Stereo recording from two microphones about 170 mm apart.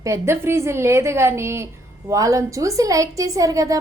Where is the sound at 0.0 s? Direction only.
15° right (ahead or behind).